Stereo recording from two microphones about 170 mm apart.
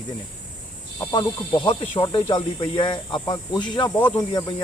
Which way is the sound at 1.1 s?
25° left (ahead or behind).